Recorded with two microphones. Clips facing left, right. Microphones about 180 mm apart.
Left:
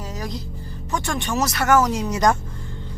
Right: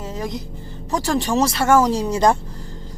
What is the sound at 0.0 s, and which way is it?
Music, 25° right (ahead or behind).